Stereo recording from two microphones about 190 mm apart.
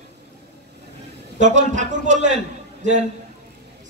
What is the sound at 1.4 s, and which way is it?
A man's voice, 40° right (ahead or behind).